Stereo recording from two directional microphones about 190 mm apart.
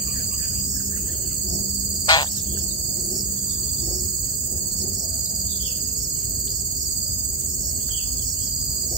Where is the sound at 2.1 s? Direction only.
25° left (ahead or behind).